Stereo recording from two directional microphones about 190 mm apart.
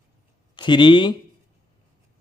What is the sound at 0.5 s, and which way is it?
Speech, 25° left (ahead or behind).